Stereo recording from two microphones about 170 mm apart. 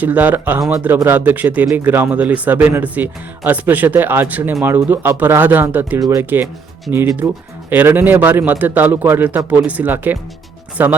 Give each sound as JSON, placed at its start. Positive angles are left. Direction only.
{"t": 0.0, "sound": "speech", "side_deg": -10}